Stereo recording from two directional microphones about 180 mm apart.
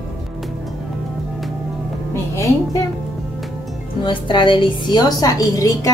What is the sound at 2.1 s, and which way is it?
Music, 20° left (ahead or behind).